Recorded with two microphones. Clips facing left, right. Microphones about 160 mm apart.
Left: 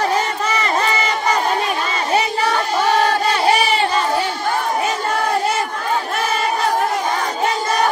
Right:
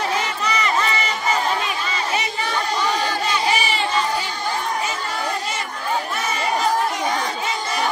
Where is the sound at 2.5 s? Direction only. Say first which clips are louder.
Left 2 dB; 60° left (ahead or behind).